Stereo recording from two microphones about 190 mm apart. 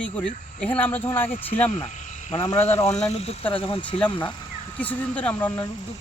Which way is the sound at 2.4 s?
30° left (ahead or behind).